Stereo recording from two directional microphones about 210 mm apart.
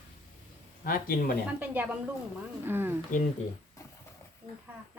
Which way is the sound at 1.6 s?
10° right (ahead or behind).